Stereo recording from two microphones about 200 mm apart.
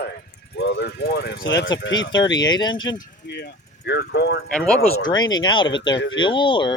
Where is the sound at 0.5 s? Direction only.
55° left (ahead or behind).